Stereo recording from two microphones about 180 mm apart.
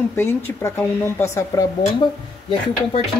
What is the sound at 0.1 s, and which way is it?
Speech, 15° left (ahead or behind).